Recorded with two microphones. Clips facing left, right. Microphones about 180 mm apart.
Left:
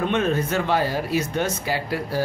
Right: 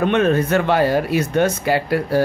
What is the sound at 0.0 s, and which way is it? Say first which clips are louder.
Speech: right 6 dB; 65° right (ahead or behind).